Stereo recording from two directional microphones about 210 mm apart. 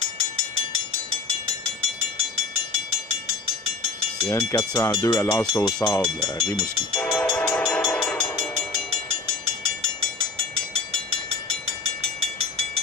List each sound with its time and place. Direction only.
4.3 s speech: 15° left (ahead or behind)
7.0 s train: 5° left (ahead or behind)
12.0 s a sound: 30° right (ahead or behind)